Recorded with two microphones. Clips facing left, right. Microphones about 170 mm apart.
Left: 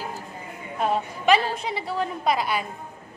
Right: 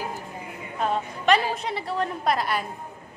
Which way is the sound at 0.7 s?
5° left (ahead or behind).